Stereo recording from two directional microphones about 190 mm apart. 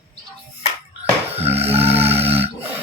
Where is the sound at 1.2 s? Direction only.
30° right (ahead or behind).